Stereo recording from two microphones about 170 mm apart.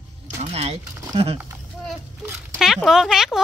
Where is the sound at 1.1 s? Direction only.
35° right (ahead or behind).